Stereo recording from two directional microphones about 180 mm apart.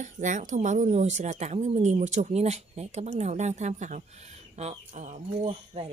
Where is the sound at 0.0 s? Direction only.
45° right (ahead or behind).